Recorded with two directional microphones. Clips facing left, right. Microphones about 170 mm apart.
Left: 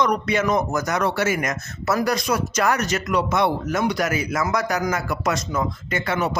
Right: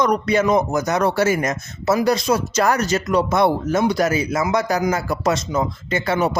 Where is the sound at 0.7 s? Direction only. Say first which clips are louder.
Right 3 dB; 20° right (ahead or behind).